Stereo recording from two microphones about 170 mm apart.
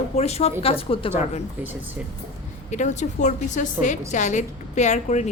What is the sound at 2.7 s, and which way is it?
A woman's voice, 45° left (ahead or behind).